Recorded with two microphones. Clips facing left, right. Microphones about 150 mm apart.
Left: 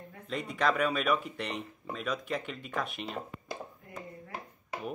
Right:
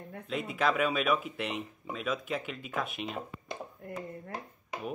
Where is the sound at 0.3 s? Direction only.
5° right (ahead or behind).